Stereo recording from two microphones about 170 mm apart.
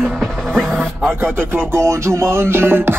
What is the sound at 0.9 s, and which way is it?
Music, 10° right (ahead or behind).